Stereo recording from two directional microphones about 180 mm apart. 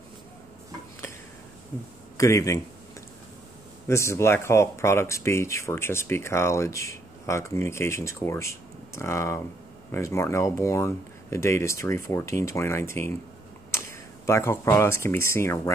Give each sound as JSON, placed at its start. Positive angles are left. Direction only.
{"t": 2.1, "sound": "speech", "side_deg": 15}
{"t": 3.8, "sound": "speech", "side_deg": 15}
{"t": 14.2, "sound": "speech", "side_deg": 15}